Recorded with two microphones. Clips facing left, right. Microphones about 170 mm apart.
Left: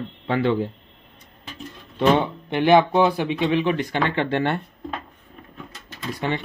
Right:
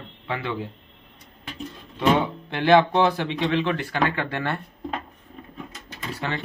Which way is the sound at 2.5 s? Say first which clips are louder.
Left 2 dB; 15° left (ahead or behind).